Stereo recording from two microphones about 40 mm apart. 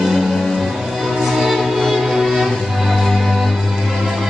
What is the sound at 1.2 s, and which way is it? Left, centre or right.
Music, centre.